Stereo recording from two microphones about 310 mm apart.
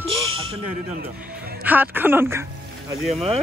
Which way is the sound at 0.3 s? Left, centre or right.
Right.